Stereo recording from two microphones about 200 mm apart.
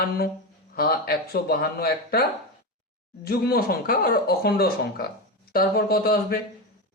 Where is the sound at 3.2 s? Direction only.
50° left (ahead or behind).